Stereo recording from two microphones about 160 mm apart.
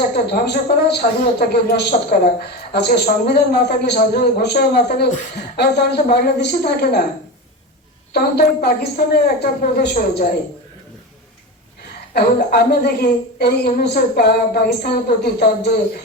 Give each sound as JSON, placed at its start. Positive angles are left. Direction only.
{"t": 0.1, "sound": "a woman's voice", "side_deg": 90}
{"t": 8.1, "sound": "speech", "side_deg": 80}
{"t": 12.1, "sound": "speech", "side_deg": 80}